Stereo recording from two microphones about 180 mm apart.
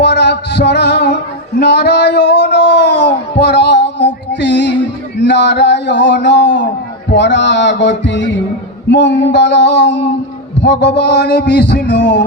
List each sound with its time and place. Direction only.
0.0 s male singing: 70° left (ahead or behind)
7.1 s heart sounds: 80° left
8.9 s a sound: 80° left